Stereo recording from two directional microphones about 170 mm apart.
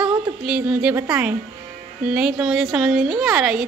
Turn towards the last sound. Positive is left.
turn(degrees=0)  # may be behind; listen again after turning